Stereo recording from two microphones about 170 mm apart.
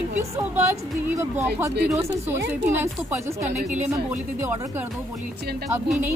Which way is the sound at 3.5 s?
45° right (ahead or behind).